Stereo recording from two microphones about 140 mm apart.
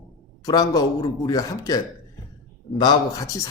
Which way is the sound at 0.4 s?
25° left (ahead or behind).